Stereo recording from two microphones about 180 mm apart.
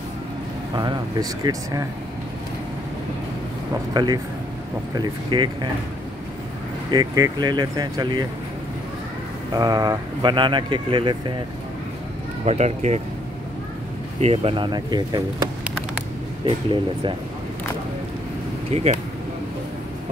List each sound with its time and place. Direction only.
1.4 s speech: 20° right (ahead or behind)
3.9 s speech: 20° right (ahead or behind)
6.9 s speech: 25° right (ahead or behind)
9.5 s speech: 20° right (ahead or behind)
12.4 s speech: 40° right (ahead or behind)
14.2 s speech: 35° right (ahead or behind)